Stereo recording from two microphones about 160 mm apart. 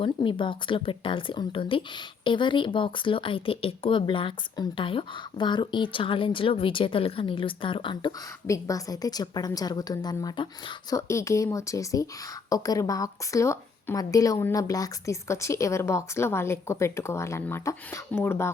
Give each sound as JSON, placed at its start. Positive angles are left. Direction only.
{"t": 0.0, "sound": "speech", "side_deg": 30}
{"t": 8.4, "sound": "a woman's voice", "side_deg": 20}